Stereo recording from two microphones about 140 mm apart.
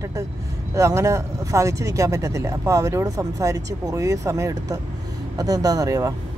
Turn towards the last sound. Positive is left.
turn(degrees=-25)  # may be behind; listen again after turning